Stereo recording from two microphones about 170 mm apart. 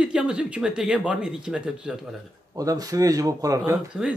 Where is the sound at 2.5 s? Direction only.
20° right (ahead or behind).